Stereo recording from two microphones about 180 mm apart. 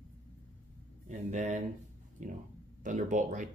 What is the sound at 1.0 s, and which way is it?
Speech, 40° right (ahead or behind).